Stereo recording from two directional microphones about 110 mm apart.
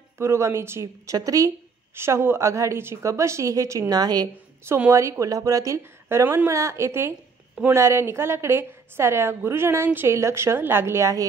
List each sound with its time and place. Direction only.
0.2 s a woman's voice: 25° right (ahead or behind)
4.6 s a woman's voice: 20° right (ahead or behind)